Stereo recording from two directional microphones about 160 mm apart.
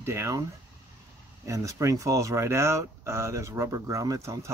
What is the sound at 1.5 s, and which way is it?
Speech, 20° right (ahead or behind).